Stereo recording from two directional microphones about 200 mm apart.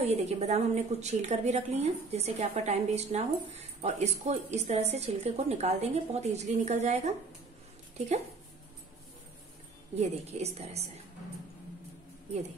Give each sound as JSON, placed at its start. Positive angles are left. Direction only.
{"t": 0.0, "sound": "a woman's voice", "side_deg": -30}
{"t": 9.9, "sound": "a woman's voice", "side_deg": -30}